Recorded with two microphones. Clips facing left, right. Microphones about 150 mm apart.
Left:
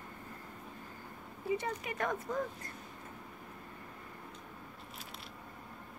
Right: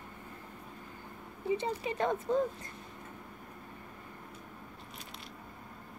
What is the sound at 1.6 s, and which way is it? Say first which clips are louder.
Speech: right 4 dB; 25° right (ahead or behind).